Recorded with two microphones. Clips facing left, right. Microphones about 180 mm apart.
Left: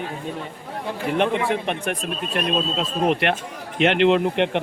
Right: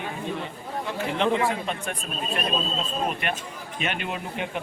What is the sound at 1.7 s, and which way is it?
Speech, 70° left (ahead or behind).